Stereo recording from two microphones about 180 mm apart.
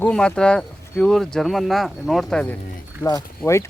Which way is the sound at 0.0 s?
5° left (ahead or behind).